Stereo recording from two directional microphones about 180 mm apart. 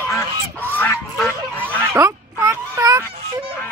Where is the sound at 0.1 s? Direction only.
10° left (ahead or behind).